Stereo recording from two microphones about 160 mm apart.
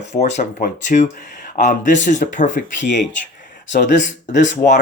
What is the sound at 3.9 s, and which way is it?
Speech, 50° left (ahead or behind).